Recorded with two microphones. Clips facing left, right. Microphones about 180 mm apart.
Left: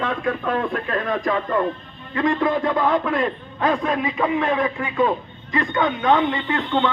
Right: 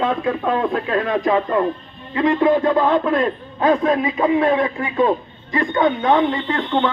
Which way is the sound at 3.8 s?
30° right (ahead or behind).